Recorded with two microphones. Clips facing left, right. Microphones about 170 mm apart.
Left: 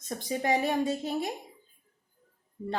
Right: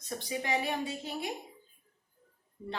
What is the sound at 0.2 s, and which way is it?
A woman's voice, 45° left (ahead or behind).